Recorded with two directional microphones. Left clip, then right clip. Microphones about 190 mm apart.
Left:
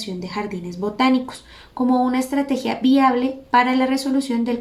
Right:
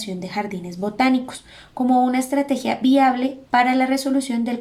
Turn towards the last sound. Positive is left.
turn(degrees=-15)  # may be behind; listen again after turning